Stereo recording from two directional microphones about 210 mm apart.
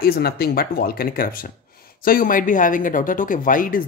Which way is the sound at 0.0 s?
45° left (ahead or behind).